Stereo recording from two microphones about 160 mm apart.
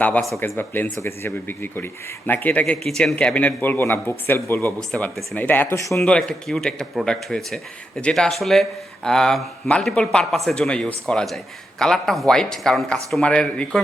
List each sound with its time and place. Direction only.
0.0 s a man's voice: 10° left (ahead or behind)
4.8 s a man's voice: 5° left (ahead or behind)
6.1 s speech: 5° left (ahead or behind)